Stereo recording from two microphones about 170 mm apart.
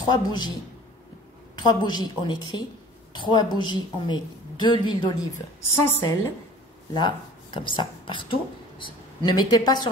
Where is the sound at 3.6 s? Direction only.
25° left (ahead or behind).